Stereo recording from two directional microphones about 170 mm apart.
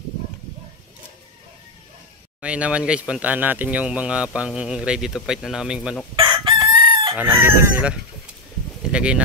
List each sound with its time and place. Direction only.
2.4 s speech: 5° right (ahead or behind)
6.1 s chicken: 25° right (ahead or behind)
7.2 s chicken: 15° right (ahead or behind)
8.9 s speech: 5° right (ahead or behind)